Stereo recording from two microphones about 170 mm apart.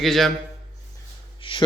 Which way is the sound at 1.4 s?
30° left (ahead or behind).